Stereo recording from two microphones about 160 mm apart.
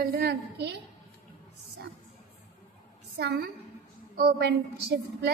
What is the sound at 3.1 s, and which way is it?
A woman's voice, 85° right.